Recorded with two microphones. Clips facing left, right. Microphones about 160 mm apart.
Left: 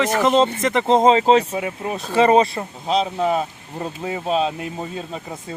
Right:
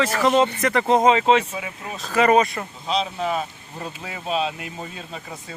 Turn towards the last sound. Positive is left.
turn(degrees=35)  # may be behind; listen again after turning